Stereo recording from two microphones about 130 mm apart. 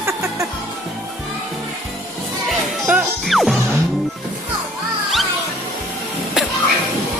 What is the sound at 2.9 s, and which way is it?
Music, 5° right (ahead or behind).